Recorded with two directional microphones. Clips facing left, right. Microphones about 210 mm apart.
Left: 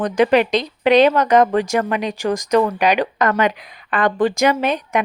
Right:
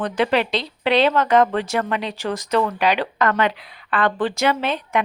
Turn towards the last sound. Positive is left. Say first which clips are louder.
# left 3 dB
turn(degrees=15)  # may be behind; listen again after turning